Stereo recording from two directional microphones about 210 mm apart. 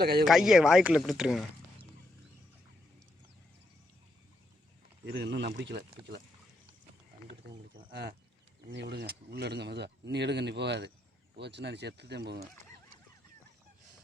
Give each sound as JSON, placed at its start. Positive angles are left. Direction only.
{"t": 0.0, "sound": "speech", "side_deg": -50}
{"t": 0.3, "sound": "speech", "side_deg": 0}
{"t": 5.0, "sound": "speech", "side_deg": -55}
{"t": 7.9, "sound": "speech", "side_deg": -50}